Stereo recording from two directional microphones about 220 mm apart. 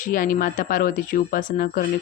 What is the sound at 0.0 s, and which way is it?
A woman's voice, 40° left (ahead or behind).